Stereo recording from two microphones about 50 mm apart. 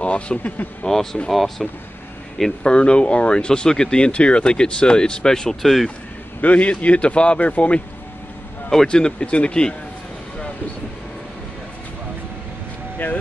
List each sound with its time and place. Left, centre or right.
0.0 s speech: left
0.8 s speech: centre
2.6 s speech: centre
6.4 s speech: left
8.6 s speech: centre